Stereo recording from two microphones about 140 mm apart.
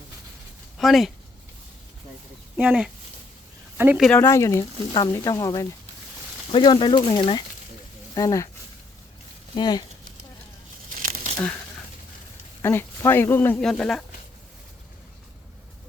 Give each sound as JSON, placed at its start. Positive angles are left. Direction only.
{"t": 0.8, "sound": "speech", "side_deg": 0}
{"t": 2.6, "sound": "speech", "side_deg": -10}
{"t": 4.0, "sound": "speech", "side_deg": 10}
{"t": 4.3, "sound": "speech", "side_deg": 20}
{"t": 9.6, "sound": "speech", "side_deg": 30}
{"t": 10.8, "sound": "crumpling", "side_deg": -75}
{"t": 12.6, "sound": "speech", "side_deg": 20}
{"t": 13.6, "sound": "speech", "side_deg": 5}